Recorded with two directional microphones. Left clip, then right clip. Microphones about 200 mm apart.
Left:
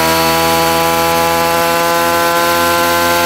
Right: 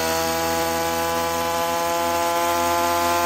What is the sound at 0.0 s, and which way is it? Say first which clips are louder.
Sawing: left 11 dB; 5° left (ahead or behind).